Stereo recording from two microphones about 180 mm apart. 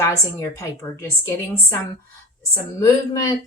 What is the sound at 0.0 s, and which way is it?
Speech, 15° left (ahead or behind).